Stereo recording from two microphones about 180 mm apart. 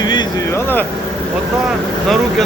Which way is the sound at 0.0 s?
25° left (ahead or behind).